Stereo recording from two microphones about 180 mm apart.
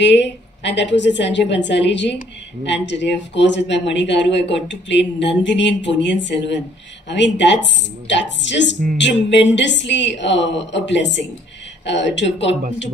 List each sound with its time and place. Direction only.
0.0 s a woman's voice: 75° left (ahead or behind)